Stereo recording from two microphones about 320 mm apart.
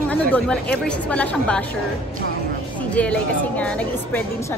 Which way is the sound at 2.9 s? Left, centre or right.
Centre.